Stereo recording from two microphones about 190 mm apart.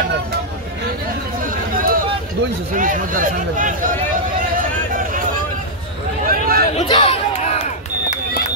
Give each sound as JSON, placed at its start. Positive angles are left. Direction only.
{"t": 1.4, "sound": "chatter", "side_deg": -45}
{"t": 2.7, "sound": "speech", "side_deg": -45}
{"t": 6.2, "sound": "a sound", "side_deg": -50}
{"t": 6.7, "sound": "chatter", "side_deg": 30}